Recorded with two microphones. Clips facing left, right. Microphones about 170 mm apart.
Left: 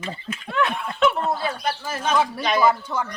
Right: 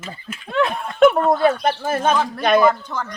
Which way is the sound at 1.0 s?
50° right (ahead or behind).